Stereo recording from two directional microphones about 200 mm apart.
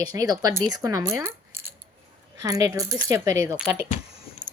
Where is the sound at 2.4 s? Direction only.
15° right (ahead or behind).